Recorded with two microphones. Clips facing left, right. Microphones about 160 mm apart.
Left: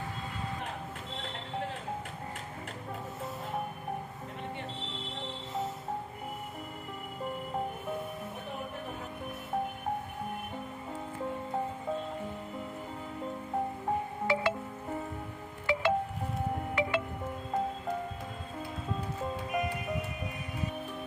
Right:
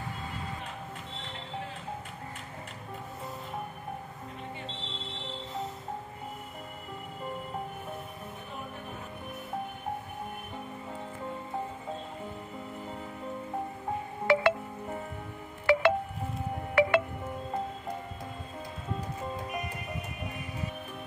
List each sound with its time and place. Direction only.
14.2 s music: 65° right (ahead or behind)
15.6 s music: 70° right (ahead or behind)